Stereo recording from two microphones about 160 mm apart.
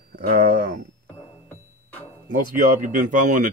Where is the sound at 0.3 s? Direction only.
65° right (ahead or behind).